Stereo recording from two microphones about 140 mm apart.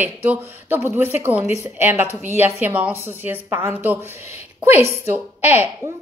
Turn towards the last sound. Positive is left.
turn(degrees=-15)  # may be behind; listen again after turning